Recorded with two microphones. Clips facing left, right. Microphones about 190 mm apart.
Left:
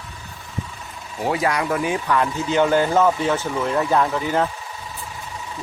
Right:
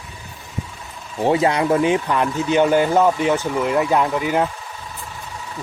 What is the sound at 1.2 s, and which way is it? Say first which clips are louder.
Speech: right 5 dB; 25° right (ahead or behind).